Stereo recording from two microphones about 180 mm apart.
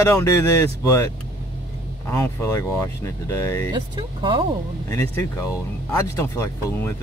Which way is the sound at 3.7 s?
25° right (ahead or behind).